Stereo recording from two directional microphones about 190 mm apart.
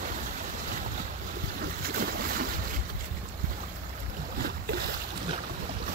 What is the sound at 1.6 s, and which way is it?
Boat, 50° right (ahead or behind).